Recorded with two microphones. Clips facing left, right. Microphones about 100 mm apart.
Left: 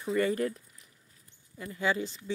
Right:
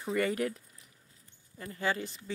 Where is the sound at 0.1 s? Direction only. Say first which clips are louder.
Left 2 dB; 70° right (ahead or behind).